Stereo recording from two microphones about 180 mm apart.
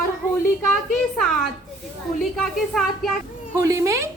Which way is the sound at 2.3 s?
Centre (ahead or behind).